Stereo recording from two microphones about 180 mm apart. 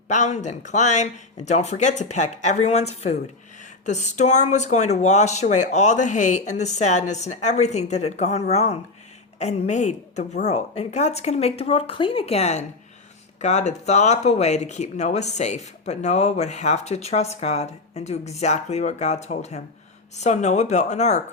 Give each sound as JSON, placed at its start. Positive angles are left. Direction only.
{"t": 0.1, "sound": "speech", "side_deg": 40}